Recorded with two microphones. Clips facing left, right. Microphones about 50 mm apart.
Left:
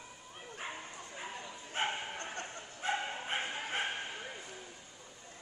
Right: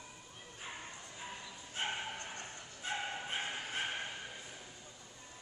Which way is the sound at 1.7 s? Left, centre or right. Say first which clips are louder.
Left 3 dB; left.